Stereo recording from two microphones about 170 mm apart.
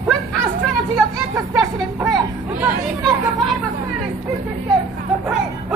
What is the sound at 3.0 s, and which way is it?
Chatter, centre (ahead or behind).